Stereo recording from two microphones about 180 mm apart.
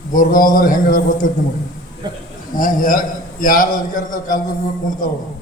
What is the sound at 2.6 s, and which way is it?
A man's voice, 50° left (ahead or behind).